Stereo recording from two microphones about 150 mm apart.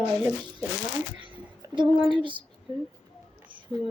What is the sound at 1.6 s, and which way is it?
Speech, 30° right (ahead or behind).